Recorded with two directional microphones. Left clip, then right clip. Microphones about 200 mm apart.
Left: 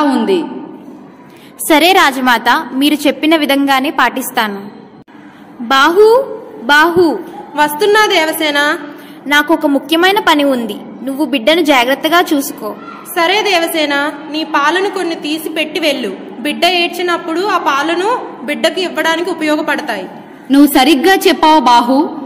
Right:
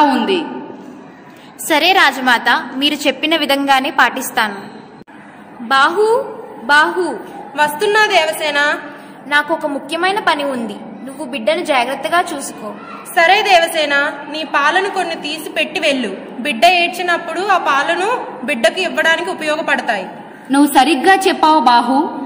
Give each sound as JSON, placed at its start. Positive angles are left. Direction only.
{"t": 0.0, "sound": "a sound", "side_deg": 30}
{"t": 1.7, "sound": "a woman's voice", "side_deg": 30}
{"t": 5.7, "sound": "a woman's voice", "side_deg": 40}
{"t": 9.3, "sound": "a woman's voice", "side_deg": 40}
{"t": 13.1, "sound": "a woman's voice", "side_deg": 20}